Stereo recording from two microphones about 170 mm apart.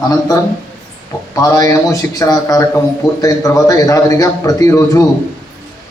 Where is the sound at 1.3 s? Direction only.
20° left (ahead or behind).